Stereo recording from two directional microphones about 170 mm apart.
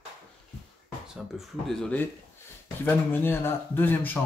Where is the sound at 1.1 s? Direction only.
Centre (ahead or behind).